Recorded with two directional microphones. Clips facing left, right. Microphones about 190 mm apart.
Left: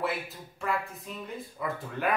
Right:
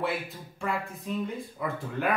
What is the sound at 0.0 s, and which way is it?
A man's voice, centre (ahead or behind).